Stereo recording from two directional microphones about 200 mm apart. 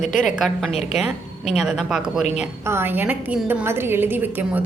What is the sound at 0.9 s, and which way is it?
A woman's voice, centre (ahead or behind).